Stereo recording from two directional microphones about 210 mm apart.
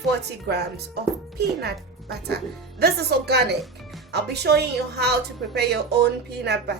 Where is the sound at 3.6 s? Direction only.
Centre (ahead or behind).